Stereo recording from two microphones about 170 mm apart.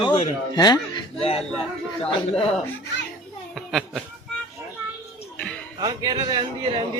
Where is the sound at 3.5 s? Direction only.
Centre (ahead or behind).